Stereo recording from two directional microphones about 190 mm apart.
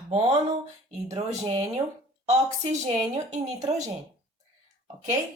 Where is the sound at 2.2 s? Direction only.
35° right (ahead or behind).